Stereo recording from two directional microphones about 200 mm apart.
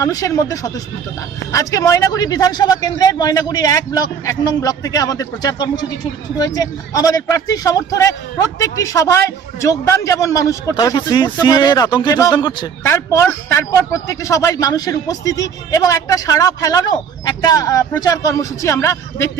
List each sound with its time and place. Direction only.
0.0 s a man's voice: 15° left (ahead or behind)